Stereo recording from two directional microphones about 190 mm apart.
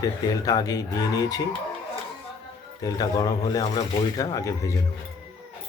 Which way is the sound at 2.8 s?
20° left (ahead or behind).